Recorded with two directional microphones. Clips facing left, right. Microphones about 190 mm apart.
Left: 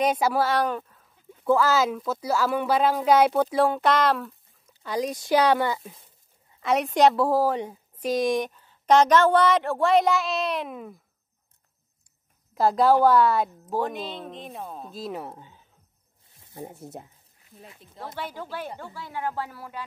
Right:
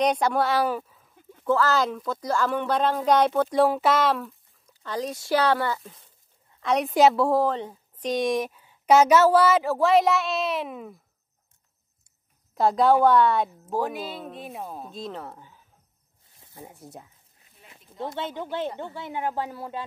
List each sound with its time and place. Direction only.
0.0 s a woman's voice: 5° left (ahead or behind)
1.4 s a woman's voice: 10° left (ahead or behind)
4.8 s speech: 15° left (ahead or behind)
6.5 s a woman's voice: 5° left (ahead or behind)
7.5 s a woman's voice: 10° left (ahead or behind)
8.1 s a woman's voice: centre (ahead or behind)
12.5 s a woman's voice: centre (ahead or behind); by 15.6 s 20° left (ahead or behind)
16.6 s speech: 25° left (ahead or behind)
17.9 s speech: 25° right (ahead or behind)